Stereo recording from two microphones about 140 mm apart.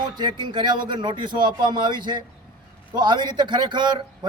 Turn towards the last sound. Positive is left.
turn(degrees=-30)  # may be behind; listen again after turning